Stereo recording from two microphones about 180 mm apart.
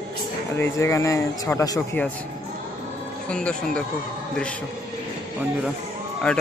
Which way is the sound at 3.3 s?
5° left (ahead or behind).